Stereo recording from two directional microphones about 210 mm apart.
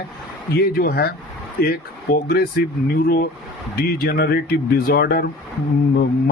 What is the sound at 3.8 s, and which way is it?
Speech, 45° left (ahead or behind).